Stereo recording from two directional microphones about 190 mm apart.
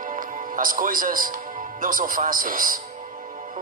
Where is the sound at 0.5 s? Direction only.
45° right (ahead or behind).